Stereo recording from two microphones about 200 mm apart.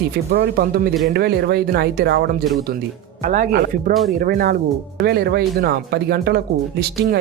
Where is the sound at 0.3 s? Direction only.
50° right (ahead or behind).